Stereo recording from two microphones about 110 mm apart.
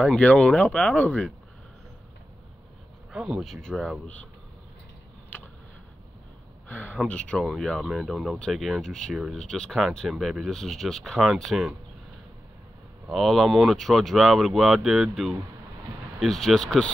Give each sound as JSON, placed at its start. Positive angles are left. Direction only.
{"t": 0.0, "sound": "speech", "side_deg": 10}
{"t": 3.1, "sound": "speech", "side_deg": -5}
{"t": 6.7, "sound": "speech", "side_deg": 15}
{"t": 13.1, "sound": "speech", "side_deg": 0}